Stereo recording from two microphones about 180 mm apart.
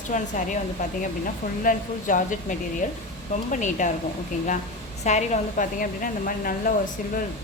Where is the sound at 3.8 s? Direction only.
45° left (ahead or behind).